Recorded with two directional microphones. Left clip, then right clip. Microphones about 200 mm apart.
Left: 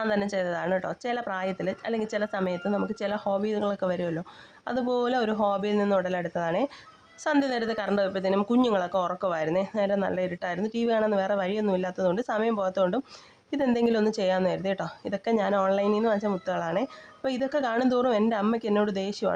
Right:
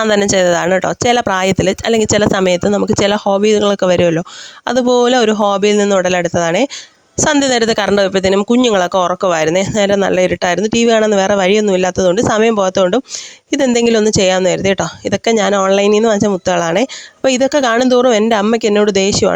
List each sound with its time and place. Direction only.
0.0 s speech: 50° right (ahead or behind)